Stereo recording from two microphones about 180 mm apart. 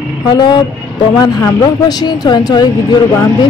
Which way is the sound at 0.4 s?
25° left (ahead or behind).